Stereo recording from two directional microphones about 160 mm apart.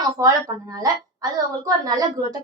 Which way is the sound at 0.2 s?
20° right (ahead or behind).